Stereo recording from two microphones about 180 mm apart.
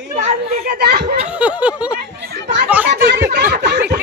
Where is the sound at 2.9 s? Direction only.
70° right (ahead or behind).